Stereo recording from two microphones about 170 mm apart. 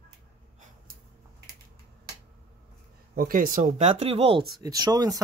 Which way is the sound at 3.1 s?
55° right (ahead or behind).